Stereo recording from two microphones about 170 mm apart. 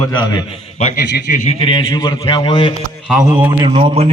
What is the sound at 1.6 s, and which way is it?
A man's voice, 30° left (ahead or behind).